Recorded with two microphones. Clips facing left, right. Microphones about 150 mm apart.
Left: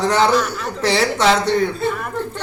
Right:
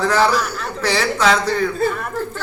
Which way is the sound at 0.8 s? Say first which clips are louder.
Left 1 dB; 25° left (ahead or behind).